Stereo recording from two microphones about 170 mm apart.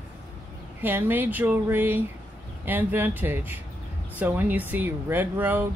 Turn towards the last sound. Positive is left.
turn(degrees=-10)  # may be behind; listen again after turning